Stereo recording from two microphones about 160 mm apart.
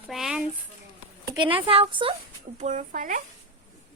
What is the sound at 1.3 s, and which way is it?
Speech, 30° right (ahead or behind).